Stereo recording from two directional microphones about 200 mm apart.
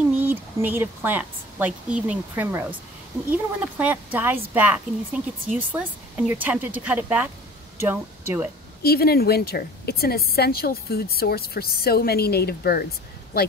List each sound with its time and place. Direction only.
0.2 s speech: 10° right (ahead or behind)
8.8 s a woman's voice: 50° left (ahead or behind)